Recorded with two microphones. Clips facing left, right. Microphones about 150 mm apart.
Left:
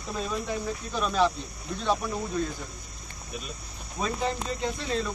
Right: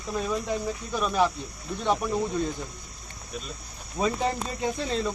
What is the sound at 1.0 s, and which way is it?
Speech, 15° right (ahead or behind).